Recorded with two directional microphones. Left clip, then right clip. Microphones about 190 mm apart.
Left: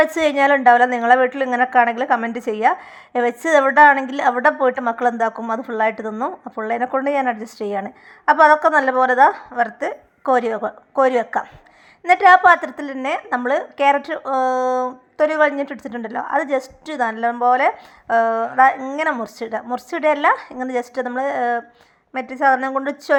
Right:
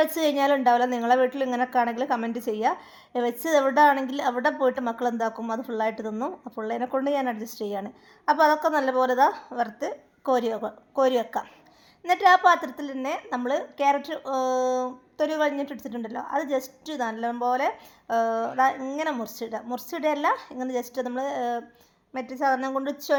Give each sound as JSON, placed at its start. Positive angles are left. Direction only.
{"t": 0.0, "sound": "a woman's voice", "side_deg": 15}